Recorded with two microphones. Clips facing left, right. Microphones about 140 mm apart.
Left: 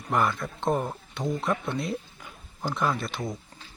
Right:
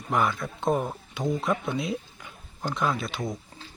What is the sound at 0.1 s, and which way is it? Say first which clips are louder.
Speech: even; centre (ahead or behind).